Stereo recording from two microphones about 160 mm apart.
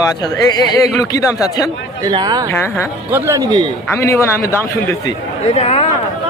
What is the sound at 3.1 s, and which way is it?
Speech, 15° right (ahead or behind).